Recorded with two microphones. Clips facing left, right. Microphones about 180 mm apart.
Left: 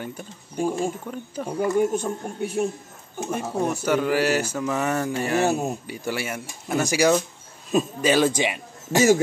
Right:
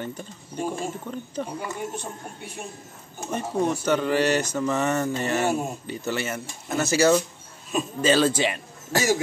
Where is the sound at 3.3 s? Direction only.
10° left (ahead or behind).